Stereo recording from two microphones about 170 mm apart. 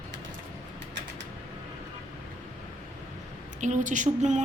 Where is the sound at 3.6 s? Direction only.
45° right (ahead or behind).